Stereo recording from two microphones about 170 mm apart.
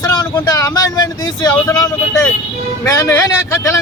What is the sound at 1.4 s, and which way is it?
Vehicle, 20° left (ahead or behind).